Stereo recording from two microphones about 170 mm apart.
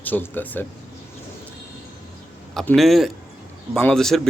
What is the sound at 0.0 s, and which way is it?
Speech, 10° left (ahead or behind).